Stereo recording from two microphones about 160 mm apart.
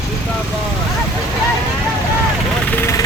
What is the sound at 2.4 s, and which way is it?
Vehicle, 10° left (ahead or behind).